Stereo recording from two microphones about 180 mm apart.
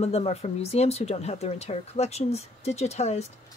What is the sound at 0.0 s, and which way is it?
Speech, 35° left (ahead or behind).